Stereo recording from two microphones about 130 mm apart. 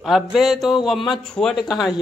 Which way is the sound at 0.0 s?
Centre (ahead or behind).